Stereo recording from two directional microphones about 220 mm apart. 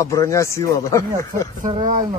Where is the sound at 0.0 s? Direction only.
15° left (ahead or behind).